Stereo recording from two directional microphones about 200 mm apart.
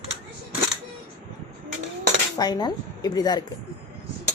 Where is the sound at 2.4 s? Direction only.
20° left (ahead or behind).